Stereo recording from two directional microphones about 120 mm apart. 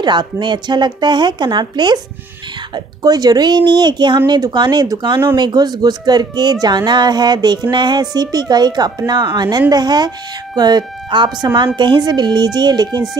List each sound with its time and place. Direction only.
0.0 s a woman's voice: 40° right (ahead or behind)